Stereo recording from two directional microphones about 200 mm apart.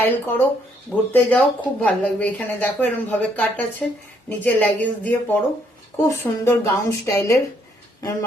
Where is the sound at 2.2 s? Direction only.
5° left (ahead or behind).